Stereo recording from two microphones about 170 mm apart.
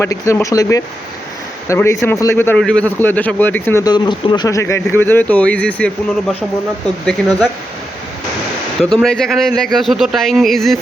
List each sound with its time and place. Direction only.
0.0 s speech: 15° left (ahead or behind)
3.8 s speech: 25° left (ahead or behind); by 7.4 s centre (ahead or behind)
8.8 s speech: centre (ahead or behind)